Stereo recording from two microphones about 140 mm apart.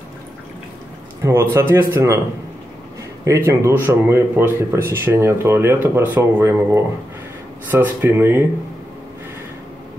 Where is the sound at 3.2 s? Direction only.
20° right (ahead or behind).